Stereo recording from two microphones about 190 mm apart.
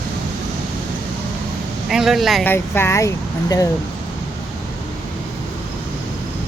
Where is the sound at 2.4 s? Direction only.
10° left (ahead or behind).